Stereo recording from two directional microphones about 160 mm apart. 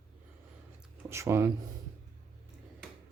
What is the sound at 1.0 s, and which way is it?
Speech, 15° right (ahead or behind).